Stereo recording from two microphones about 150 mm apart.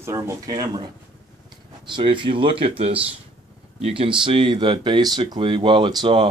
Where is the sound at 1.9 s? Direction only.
35° right (ahead or behind).